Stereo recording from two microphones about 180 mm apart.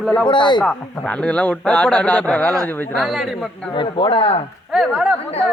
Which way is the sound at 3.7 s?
25° left (ahead or behind).